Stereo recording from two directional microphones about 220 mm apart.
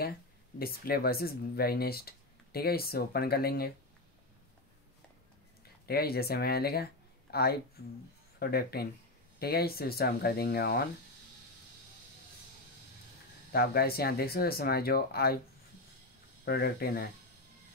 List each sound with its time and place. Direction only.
0.6 s speech: 45° left (ahead or behind)
5.9 s speech: 45° left (ahead or behind)
13.5 s speech: 45° left (ahead or behind)
16.4 s speech: 45° left (ahead or behind)